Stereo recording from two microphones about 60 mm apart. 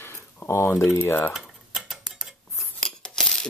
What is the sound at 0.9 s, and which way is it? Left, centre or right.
Speech, left.